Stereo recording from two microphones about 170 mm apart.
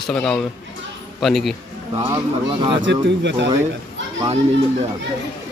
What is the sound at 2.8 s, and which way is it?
Speech, 90° right.